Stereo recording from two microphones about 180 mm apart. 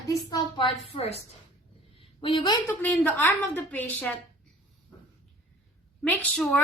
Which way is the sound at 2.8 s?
10° left (ahead or behind).